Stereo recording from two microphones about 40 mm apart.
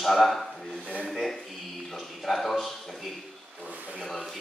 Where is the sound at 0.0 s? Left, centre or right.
Centre.